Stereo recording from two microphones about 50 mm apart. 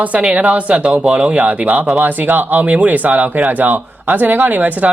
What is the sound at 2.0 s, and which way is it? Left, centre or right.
Speech, right.